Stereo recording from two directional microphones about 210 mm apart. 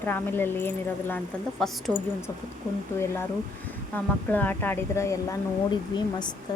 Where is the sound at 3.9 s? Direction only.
10° left (ahead or behind).